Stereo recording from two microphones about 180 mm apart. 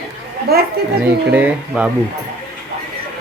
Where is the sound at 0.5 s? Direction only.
60° right (ahead or behind).